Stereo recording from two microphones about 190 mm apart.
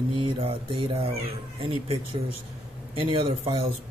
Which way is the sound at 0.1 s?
25° right (ahead or behind).